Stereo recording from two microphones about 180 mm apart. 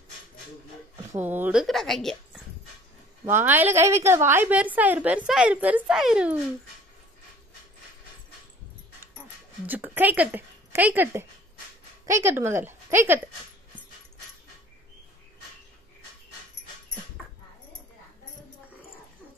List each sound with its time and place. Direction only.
1.1 s speech: 10° right (ahead or behind)
3.3 s a woman's voice: 10° right (ahead or behind)
9.7 s a woman's voice: 10° right (ahead or behind)